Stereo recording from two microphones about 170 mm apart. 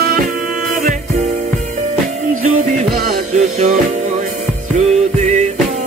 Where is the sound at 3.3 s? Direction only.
45° right (ahead or behind).